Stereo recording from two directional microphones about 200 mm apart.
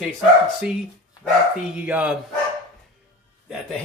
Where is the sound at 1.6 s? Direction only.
5° right (ahead or behind).